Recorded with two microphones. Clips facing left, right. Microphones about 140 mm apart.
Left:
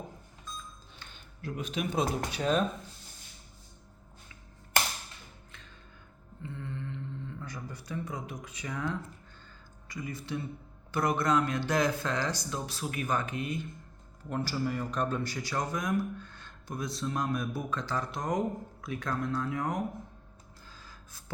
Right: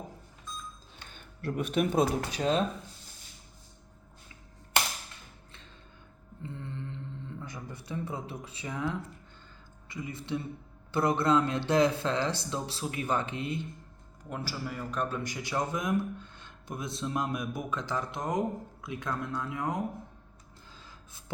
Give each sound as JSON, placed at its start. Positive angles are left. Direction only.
{"t": 1.4, "sound": "speech", "side_deg": -60}
{"t": 2.4, "sound": "speech", "side_deg": -30}
{"t": 6.4, "sound": "mantra", "side_deg": -30}
{"t": 7.4, "sound": "speech", "side_deg": -25}
{"t": 9.9, "sound": "speech", "side_deg": -25}
{"t": 14.3, "sound": "a man's voice", "side_deg": -5}
{"t": 15.3, "sound": "speech", "side_deg": -20}